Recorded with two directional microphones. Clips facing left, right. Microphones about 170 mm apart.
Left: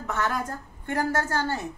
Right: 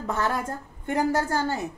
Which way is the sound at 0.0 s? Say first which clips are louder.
Right 1 dB; 30° right (ahead or behind).